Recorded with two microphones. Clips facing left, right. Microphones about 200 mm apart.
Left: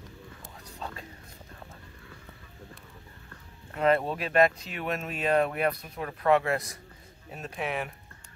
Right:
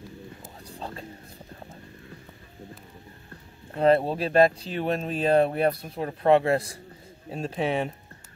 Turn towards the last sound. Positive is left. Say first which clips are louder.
# right 6 dB
turn(degrees=-30)  # may be behind; listen again after turning